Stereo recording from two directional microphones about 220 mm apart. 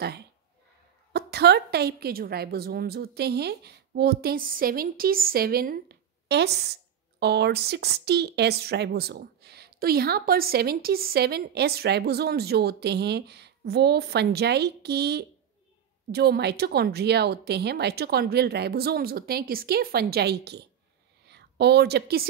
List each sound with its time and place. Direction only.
1.1 s a woman's voice: 45° right (ahead or behind)